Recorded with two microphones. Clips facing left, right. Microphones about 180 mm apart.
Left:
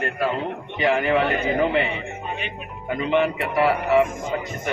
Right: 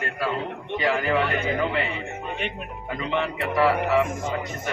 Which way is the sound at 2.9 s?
30° left (ahead or behind).